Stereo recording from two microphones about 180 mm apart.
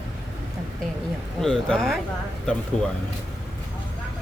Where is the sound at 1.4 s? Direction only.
5° left (ahead or behind).